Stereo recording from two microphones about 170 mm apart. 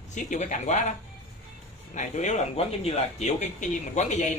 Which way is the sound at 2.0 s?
45° left (ahead or behind).